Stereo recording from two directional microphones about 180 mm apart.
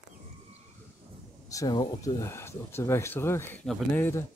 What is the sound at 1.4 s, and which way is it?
Speech, 20° left (ahead or behind).